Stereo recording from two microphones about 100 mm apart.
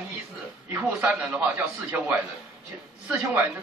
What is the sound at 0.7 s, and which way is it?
A man's voice, 15° right (ahead or behind).